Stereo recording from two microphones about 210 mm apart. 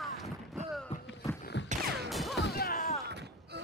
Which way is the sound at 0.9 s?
30° left (ahead or behind).